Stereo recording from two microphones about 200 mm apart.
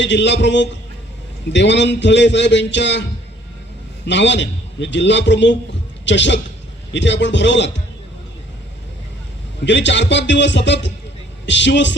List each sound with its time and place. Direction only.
0.0 s a man's voice: 60° left (ahead or behind)
9.6 s a man's voice: 65° left (ahead or behind)